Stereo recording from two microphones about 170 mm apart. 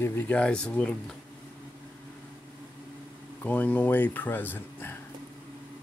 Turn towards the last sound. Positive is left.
turn(degrees=10)  # may be behind; listen again after turning